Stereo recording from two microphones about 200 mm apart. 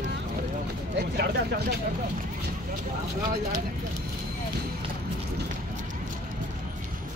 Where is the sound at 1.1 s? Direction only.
55° right (ahead or behind).